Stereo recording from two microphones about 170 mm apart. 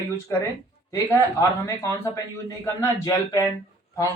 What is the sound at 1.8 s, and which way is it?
Speech, 20° left (ahead or behind).